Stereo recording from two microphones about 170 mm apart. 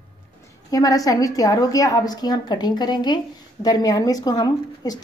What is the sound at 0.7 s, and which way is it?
A woman's voice, 20° left (ahead or behind).